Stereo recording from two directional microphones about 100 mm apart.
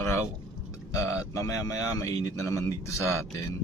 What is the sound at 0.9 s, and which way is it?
A man's voice, 30° left (ahead or behind).